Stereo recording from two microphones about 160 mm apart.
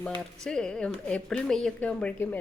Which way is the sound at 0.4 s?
5° left (ahead or behind).